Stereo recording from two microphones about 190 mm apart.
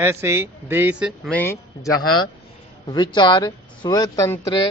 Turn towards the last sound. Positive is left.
turn(degrees=20)  # may be behind; listen again after turning